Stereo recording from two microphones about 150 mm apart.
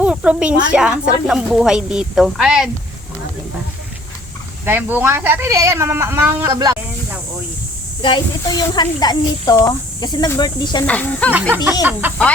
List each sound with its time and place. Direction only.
0.0 s speech: 10° right (ahead or behind)
4.6 s speech: 15° right (ahead or behind)
8.0 s speech: 30° left (ahead or behind)
10.8 s speech: 10° left (ahead or behind)
11.9 s speech: 10° right (ahead or behind)